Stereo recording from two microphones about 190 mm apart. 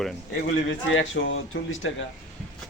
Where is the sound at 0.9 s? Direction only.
85° left.